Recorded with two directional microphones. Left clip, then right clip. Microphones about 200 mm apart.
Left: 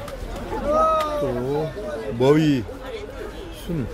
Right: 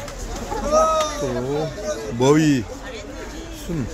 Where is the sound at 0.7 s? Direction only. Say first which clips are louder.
Right 2 dB; 50° right (ahead or behind).